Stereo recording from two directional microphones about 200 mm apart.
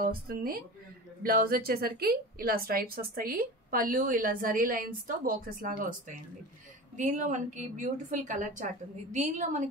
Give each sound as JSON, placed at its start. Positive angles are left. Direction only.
{"t": 0.0, "sound": "a woman's voice", "side_deg": -50}